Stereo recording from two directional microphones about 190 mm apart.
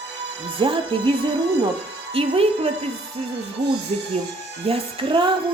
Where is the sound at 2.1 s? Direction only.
30° right (ahead or behind).